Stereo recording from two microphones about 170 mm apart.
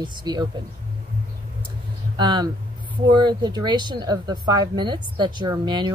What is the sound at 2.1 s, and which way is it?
Speech, 25° right (ahead or behind).